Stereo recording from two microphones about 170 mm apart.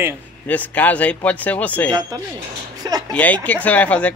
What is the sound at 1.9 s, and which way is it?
A woman's voice, 25° right (ahead or behind).